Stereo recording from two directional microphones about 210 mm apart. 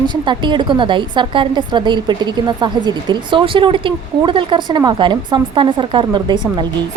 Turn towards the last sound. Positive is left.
turn(degrees=-20)  # may be behind; listen again after turning